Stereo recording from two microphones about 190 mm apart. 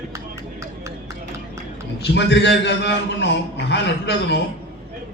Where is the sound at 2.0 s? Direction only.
65° left (ahead or behind).